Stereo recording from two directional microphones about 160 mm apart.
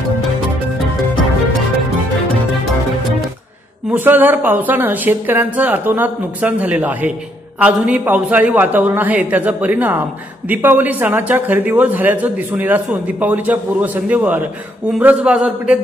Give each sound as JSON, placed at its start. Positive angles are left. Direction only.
{"t": 3.9, "sound": "a man's voice", "side_deg": -10}